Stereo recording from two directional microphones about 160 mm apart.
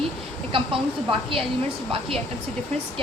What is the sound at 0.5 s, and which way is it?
Speech, 35° right (ahead or behind).